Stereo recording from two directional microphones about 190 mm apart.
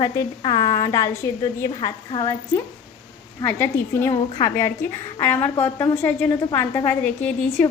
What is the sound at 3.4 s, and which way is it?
A woman's voice, 10° left (ahead or behind).